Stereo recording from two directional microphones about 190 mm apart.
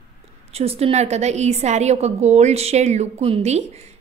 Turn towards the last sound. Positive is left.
turn(degrees=-35)  # may be behind; listen again after turning